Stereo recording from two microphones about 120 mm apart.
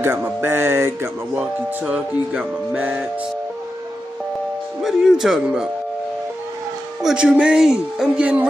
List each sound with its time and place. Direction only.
0.0 s speech: 20° right (ahead or behind)
4.8 s speech: 5° right (ahead or behind)
7.0 s speech: 5° right (ahead or behind)